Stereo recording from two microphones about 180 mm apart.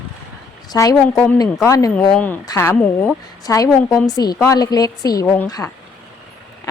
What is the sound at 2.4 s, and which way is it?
A woman's voice, 15° left (ahead or behind).